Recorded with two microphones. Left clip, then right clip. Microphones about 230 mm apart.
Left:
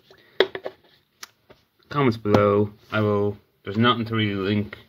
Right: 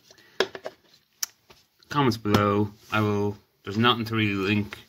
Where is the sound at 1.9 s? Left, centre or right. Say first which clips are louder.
Left 3 dB; right.